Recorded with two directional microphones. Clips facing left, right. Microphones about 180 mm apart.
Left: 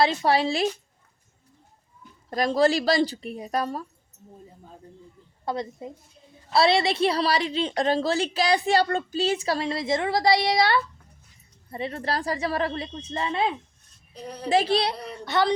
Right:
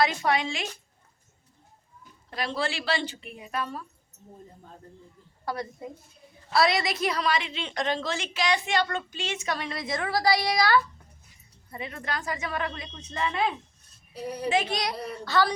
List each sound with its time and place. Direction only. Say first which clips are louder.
0.0 s a woman's voice: left 4 dB; 30° left (ahead or behind)
2.3 s a woman's voice: left 10 dB; 40° left (ahead or behind)
5.5 s a woman's voice: left 3 dB; 20° left (ahead or behind)
14.1 s a woman's voice: right 3 dB; 10° right (ahead or behind)
14.5 s a woman's voice: left 7 dB; 30° left (ahead or behind)